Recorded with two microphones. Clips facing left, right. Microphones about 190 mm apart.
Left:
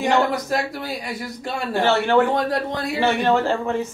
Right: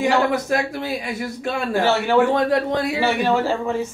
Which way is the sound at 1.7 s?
10° right (ahead or behind).